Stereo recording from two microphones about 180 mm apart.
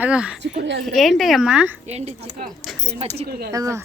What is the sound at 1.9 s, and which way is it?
Speech, 35° right (ahead or behind).